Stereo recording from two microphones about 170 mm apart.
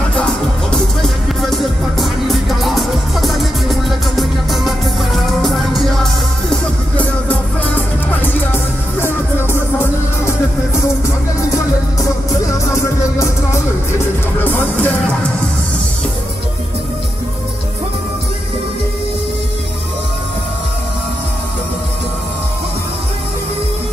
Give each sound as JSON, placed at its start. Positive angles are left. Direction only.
{"t": 0.1, "sound": "music", "side_deg": 5}
{"t": 11.5, "sound": "music", "side_deg": 20}